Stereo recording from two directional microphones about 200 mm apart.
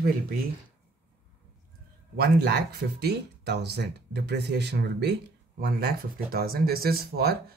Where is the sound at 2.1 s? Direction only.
55° right (ahead or behind).